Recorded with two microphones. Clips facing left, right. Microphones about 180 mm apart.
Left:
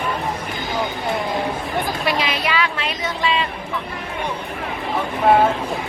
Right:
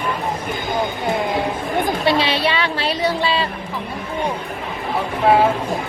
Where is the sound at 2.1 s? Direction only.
30° right (ahead or behind).